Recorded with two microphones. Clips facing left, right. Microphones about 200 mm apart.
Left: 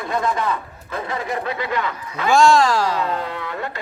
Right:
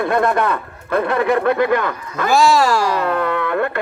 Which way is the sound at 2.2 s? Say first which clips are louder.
Even; 5° right (ahead or behind).